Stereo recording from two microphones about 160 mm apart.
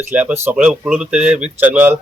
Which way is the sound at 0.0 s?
10° right (ahead or behind).